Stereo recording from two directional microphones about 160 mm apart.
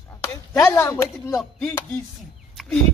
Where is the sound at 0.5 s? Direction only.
15° left (ahead or behind).